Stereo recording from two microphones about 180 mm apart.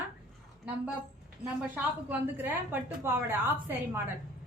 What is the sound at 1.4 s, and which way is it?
A woman's voice, 10° right (ahead or behind).